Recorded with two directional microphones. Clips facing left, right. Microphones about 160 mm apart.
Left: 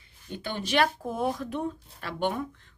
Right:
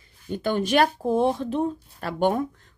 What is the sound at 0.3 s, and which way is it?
Speech, 45° right (ahead or behind).